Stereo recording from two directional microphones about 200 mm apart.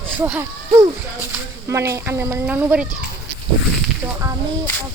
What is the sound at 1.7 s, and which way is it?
A child's voice, 15° right (ahead or behind).